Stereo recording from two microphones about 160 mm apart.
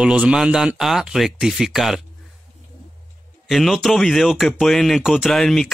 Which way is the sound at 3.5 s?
Centre (ahead or behind).